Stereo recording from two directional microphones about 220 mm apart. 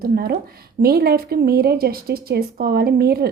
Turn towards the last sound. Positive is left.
turn(degrees=-45)  # may be behind; listen again after turning